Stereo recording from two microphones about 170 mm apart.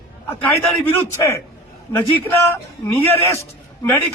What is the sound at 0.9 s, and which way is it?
A man's voice, 15° left (ahead or behind).